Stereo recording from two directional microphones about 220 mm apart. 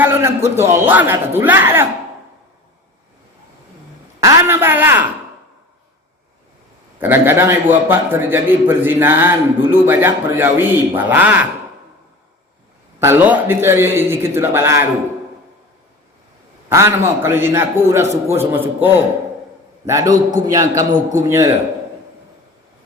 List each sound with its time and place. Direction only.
0.0 s a sound: 10° right (ahead or behind)
0.7 s a man's voice: 10° right (ahead or behind)
4.2 s a man's voice: 15° right (ahead or behind)
7.0 s a man's voice: 10° right (ahead or behind)
13.0 s a man's voice: 10° right (ahead or behind)
16.6 s a man's voice: 10° right (ahead or behind)